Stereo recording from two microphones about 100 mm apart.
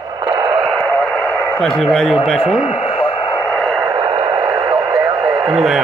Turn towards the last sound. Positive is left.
turn(degrees=-5)  # may be behind; listen again after turning